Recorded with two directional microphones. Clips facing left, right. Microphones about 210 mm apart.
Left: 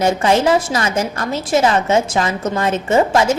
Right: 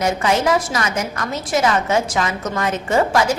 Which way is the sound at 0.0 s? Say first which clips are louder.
Left 4 dB; 30° left (ahead or behind).